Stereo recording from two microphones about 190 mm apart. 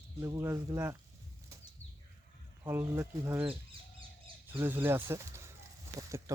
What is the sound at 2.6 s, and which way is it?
Speech, 15° right (ahead or behind).